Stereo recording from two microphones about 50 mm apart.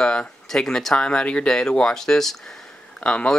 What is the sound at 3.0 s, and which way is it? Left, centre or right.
Speech, centre.